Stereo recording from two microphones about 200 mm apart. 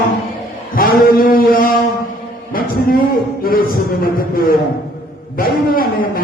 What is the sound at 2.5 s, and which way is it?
Speech, 45° left (ahead or behind).